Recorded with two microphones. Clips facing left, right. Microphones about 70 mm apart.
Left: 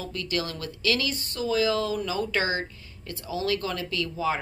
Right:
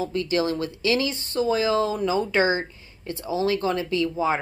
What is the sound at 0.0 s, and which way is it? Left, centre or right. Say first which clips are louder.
A woman's voice: right 7 dB; right.